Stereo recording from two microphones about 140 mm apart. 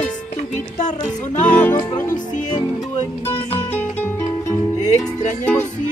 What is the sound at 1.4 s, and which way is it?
Music, 10° left (ahead or behind).